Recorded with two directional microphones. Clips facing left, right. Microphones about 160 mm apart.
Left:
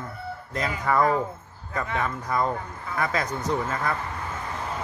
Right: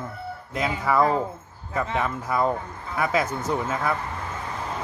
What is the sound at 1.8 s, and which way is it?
Speech, 25° right (ahead or behind).